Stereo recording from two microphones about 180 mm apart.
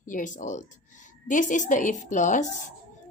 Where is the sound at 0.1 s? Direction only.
45° left (ahead or behind).